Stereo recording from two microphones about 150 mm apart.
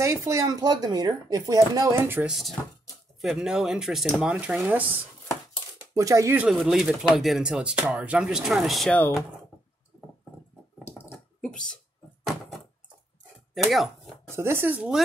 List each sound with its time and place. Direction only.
0.0 s speech: 20° right (ahead or behind)
3.2 s speech: centre (ahead or behind); by 6.3 s 20° right (ahead or behind)
6.5 s speech: centre (ahead or behind)
8.9 s speech: 15° left (ahead or behind)
11.4 s speech: 5° left (ahead or behind)
13.6 s speech: centre (ahead or behind)
14.3 s speech: 15° right (ahead or behind)